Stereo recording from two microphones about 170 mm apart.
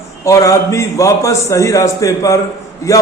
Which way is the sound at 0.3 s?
20° left (ahead or behind).